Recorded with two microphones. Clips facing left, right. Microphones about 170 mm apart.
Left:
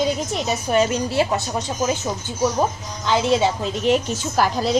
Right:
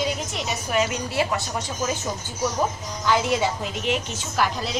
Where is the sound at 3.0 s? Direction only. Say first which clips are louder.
Left 3 dB; 25° left (ahead or behind).